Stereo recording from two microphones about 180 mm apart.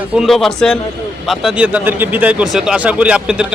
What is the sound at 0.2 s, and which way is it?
Speech, centre (ahead or behind).